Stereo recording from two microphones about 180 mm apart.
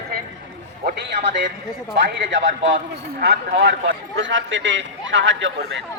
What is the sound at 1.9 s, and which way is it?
Speech, 90° right.